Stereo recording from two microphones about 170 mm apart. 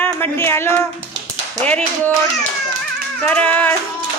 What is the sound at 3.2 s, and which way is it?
Speech, 10° left (ahead or behind).